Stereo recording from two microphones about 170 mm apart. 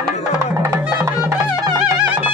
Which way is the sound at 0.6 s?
15° right (ahead or behind).